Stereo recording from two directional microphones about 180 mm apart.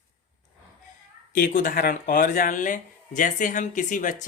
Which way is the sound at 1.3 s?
45° left (ahead or behind).